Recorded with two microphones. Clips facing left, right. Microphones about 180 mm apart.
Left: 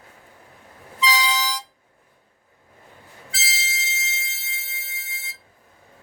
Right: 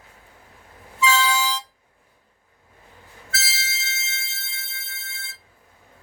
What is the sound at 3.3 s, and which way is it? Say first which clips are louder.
Music: even; 15° left (ahead or behind).